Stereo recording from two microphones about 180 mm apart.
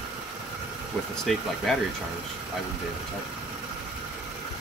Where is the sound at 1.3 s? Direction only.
Centre (ahead or behind).